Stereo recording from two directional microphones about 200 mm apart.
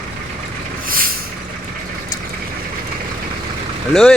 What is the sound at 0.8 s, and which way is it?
Vehicle, 45° right (ahead or behind).